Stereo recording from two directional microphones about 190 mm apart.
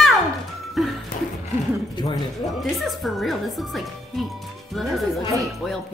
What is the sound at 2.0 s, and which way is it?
Speech, 20° left (ahead or behind).